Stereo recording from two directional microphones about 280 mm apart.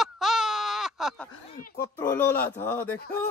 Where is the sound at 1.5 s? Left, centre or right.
Left.